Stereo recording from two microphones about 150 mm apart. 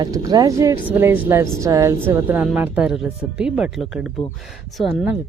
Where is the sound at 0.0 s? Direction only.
25° right (ahead or behind); by 5.0 s centre (ahead or behind).